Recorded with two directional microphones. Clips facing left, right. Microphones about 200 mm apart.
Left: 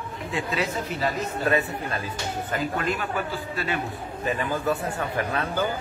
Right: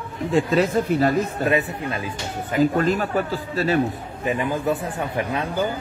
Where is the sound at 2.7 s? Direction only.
40° right (ahead or behind).